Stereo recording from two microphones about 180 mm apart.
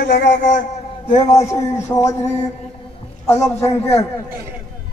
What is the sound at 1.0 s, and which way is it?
A man's voice, 25° left (ahead or behind).